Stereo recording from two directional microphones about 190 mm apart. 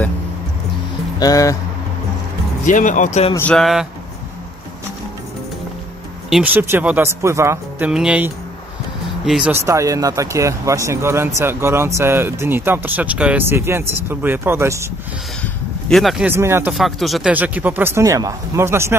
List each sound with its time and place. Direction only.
1.2 s speech: 20° left (ahead or behind)
2.6 s speech: 40° left (ahead or behind)
3.3 s speech: 5° left (ahead or behind)
6.3 s speech: 10° right (ahead or behind)
9.5 s speech: 15° right (ahead or behind)
15.4 s speech: centre (ahead or behind)
16.7 s speech: centre (ahead or behind)